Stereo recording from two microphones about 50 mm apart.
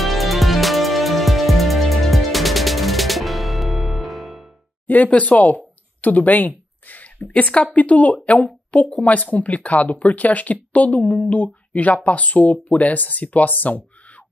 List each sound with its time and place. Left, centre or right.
0.0 s music: centre
4.8 s speech: left